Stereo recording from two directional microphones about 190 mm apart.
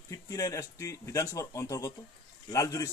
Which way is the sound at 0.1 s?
15° left (ahead or behind).